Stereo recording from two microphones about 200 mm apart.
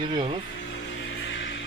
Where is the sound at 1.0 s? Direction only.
70° left (ahead or behind).